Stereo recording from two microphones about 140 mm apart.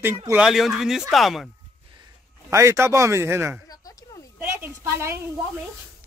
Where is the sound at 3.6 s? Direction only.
25° left (ahead or behind).